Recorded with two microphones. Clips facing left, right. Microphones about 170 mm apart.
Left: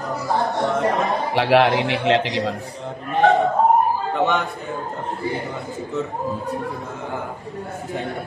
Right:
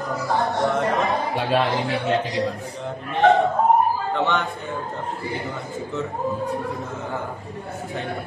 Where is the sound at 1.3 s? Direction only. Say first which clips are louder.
Left 8 dB; 85° left.